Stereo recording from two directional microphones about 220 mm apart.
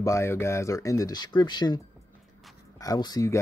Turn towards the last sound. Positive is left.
turn(degrees=15)  # may be behind; listen again after turning